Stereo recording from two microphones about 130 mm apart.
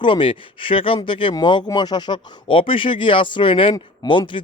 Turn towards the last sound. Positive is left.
turn(degrees=40)  # may be behind; listen again after turning